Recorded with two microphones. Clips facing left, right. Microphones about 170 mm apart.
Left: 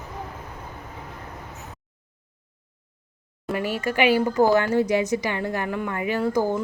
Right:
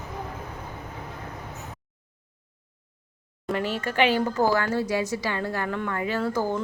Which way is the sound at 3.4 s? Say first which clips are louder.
Left 2 dB; 10° left (ahead or behind).